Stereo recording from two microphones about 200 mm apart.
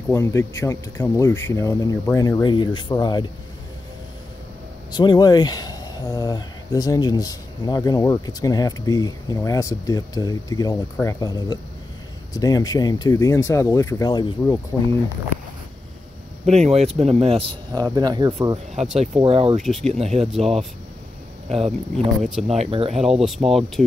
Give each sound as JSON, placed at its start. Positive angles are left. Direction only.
{"t": 0.1, "sound": "speech", "side_deg": 15}
{"t": 4.9, "sound": "speech", "side_deg": 20}
{"t": 16.4, "sound": "speech", "side_deg": -35}
{"t": 19.6, "sound": "speech", "side_deg": 0}
{"t": 20.0, "sound": "speech", "side_deg": -35}
{"t": 21.5, "sound": "speech", "side_deg": -30}
{"t": 22.2, "sound": "speech", "side_deg": 0}
{"t": 22.6, "sound": "speech", "side_deg": -30}
{"t": 22.9, "sound": "speech", "side_deg": 0}